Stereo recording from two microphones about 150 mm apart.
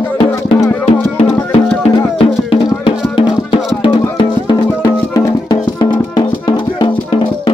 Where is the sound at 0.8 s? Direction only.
40° left (ahead or behind).